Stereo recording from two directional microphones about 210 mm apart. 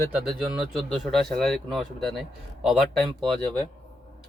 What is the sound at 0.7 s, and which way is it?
A man's voice, centre (ahead or behind).